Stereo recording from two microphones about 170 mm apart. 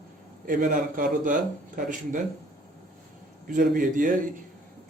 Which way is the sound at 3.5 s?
50° right (ahead or behind).